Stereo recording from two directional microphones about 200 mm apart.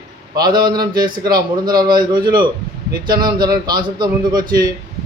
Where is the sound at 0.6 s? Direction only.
20° right (ahead or behind).